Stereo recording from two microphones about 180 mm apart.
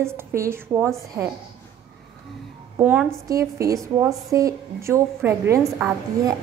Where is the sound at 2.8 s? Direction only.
5° right (ahead or behind).